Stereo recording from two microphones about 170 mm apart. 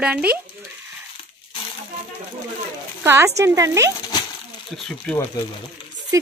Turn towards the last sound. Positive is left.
turn(degrees=10)  # may be behind; listen again after turning